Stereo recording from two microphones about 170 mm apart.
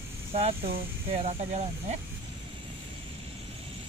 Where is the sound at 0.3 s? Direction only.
35° right (ahead or behind).